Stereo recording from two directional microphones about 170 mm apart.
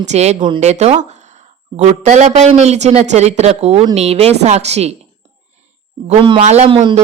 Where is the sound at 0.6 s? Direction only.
40° right (ahead or behind).